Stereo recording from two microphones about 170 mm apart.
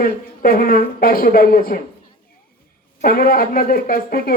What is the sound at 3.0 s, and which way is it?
Speech, 60° left (ahead or behind).